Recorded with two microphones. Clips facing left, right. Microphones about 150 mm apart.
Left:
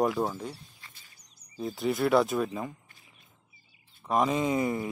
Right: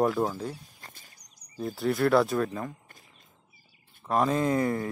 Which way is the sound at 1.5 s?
Centre (ahead or behind).